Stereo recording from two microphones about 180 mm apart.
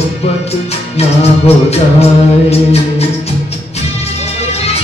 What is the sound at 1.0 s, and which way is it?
Music, 35° left (ahead or behind).